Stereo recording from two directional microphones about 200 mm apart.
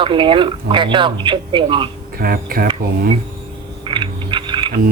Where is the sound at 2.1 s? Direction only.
50° right (ahead or behind).